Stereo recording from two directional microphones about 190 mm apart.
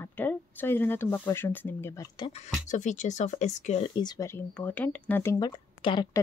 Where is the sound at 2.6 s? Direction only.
40° left (ahead or behind).